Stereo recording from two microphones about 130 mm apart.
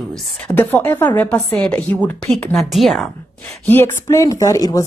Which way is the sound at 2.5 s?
Centre (ahead or behind).